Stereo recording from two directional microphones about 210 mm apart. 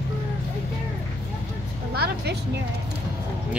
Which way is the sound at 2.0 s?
50° right (ahead or behind).